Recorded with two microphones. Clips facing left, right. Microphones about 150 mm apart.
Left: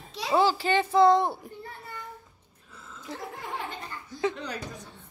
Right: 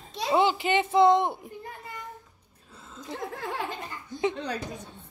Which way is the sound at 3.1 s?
25° right (ahead or behind).